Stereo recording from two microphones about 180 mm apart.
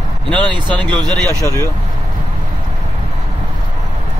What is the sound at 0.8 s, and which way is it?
Speech, 25° right (ahead or behind).